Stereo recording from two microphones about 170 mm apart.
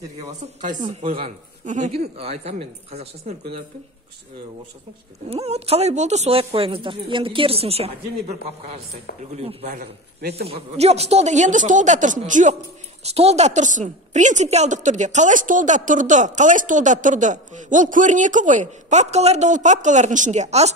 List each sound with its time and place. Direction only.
1.2 s a woman's voice: 45° right (ahead or behind)
5.3 s a woman's voice: 35° right (ahead or behind)
9.4 s a woman's voice: 35° right (ahead or behind)
13.0 s a woman's voice: 35° right (ahead or behind)